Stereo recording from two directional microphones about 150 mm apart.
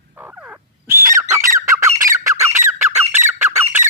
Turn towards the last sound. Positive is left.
turn(degrees=-15)  # may be behind; listen again after turning